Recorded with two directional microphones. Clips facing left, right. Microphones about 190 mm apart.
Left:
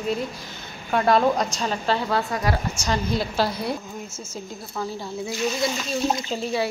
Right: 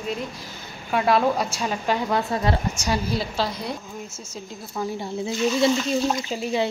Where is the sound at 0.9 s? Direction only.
5° right (ahead or behind); by 2.6 s 25° right (ahead or behind).